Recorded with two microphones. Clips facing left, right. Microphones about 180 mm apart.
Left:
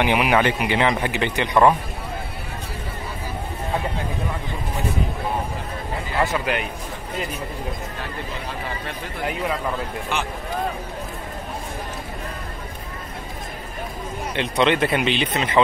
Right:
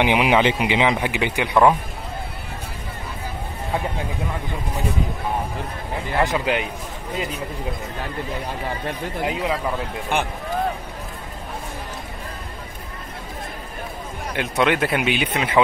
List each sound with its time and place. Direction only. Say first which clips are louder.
0.0 s speech: right 1 dB; 15° right (ahead or behind)
6.2 s speech: right 2 dB; 20° right (ahead or behind)
9.2 s speech: right 1 dB; 15° right (ahead or behind)
10.1 s speech: right 4 dB; 55° right (ahead or behind)
14.3 s speech: even; 5° right (ahead or behind)